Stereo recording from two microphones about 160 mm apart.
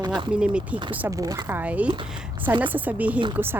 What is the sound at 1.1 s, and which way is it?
Speech, 20° right (ahead or behind).